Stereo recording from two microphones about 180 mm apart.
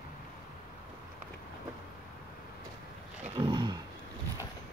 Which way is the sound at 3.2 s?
30° right (ahead or behind).